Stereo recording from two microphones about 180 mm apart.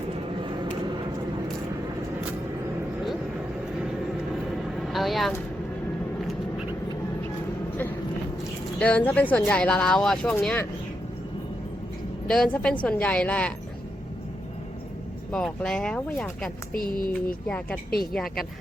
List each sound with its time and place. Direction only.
4.7 s vehicle: centre (ahead or behind)
8.8 s speech: 10° left (ahead or behind)
12.3 s speech: 5° left (ahead or behind)
15.3 s speech: 5° left (ahead or behind)
16.7 s speech: 55° left (ahead or behind)
18.1 s speech: centre (ahead or behind)